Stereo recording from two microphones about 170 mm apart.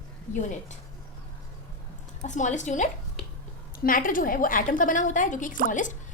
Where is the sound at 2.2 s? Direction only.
45° left (ahead or behind).